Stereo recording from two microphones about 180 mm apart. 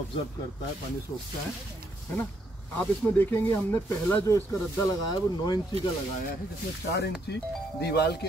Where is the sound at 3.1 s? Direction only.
10° left (ahead or behind).